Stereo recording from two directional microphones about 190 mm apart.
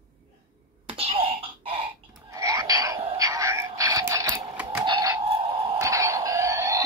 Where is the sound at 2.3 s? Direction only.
15° right (ahead or behind).